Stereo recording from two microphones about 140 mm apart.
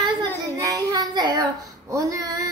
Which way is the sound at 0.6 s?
25° right (ahead or behind).